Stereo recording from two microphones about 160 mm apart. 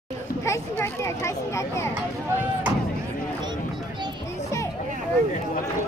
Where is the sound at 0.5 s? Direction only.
15° left (ahead or behind).